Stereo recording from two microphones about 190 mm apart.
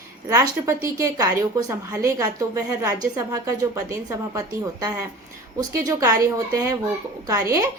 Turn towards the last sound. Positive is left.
turn(degrees=-15)  # may be behind; listen again after turning